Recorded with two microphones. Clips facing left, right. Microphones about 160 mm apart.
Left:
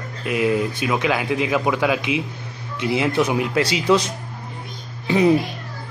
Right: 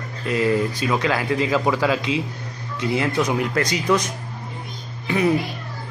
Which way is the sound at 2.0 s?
20° left (ahead or behind).